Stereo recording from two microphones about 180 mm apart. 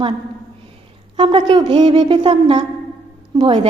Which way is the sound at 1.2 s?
25° right (ahead or behind).